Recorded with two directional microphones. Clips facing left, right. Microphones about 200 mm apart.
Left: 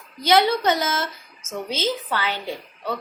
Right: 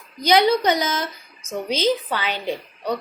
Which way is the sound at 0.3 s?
15° right (ahead or behind).